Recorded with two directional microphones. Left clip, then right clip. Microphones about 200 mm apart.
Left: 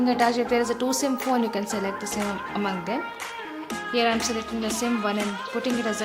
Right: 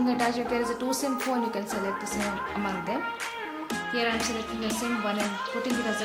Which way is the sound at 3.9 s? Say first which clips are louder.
Left 5 dB; 35° left (ahead or behind).